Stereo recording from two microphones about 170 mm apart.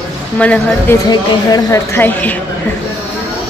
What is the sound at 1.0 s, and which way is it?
Speech, 20° left (ahead or behind).